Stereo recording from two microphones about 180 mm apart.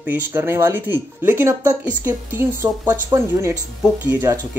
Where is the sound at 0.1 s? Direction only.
10° right (ahead or behind).